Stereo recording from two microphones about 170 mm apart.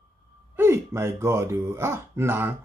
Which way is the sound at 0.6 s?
15° right (ahead or behind).